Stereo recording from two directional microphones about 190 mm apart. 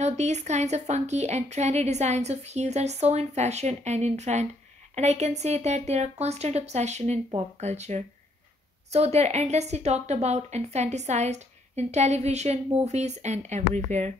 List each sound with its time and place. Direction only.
0.0 s a woman's voice: 35° right (ahead or behind)